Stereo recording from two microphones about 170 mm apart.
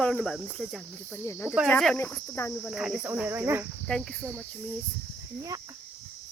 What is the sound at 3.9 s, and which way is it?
Cricket, centre (ahead or behind).